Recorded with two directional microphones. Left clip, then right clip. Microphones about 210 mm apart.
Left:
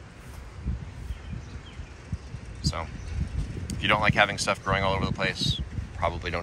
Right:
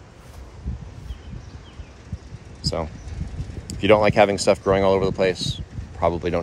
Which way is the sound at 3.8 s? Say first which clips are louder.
Right 7 dB; 35° right (ahead or behind).